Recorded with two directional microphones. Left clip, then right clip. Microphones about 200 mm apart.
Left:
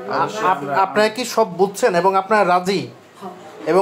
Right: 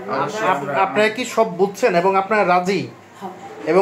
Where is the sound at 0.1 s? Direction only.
10° left (ahead or behind).